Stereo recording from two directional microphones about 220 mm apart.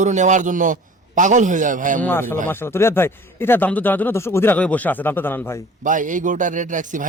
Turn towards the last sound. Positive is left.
turn(degrees=-35)  # may be behind; listen again after turning